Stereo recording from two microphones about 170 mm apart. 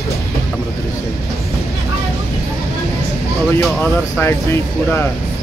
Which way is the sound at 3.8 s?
15° left (ahead or behind).